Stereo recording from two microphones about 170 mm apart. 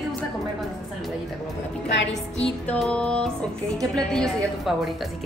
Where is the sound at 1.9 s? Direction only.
90° left.